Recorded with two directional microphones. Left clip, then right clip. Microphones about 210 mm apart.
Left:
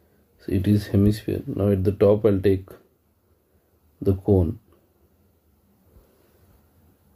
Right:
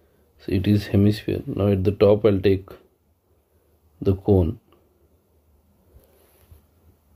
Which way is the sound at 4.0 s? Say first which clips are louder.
Right 1 dB; 20° right (ahead or behind).